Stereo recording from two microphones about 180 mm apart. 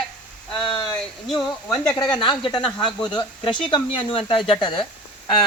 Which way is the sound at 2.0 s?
25° left (ahead or behind).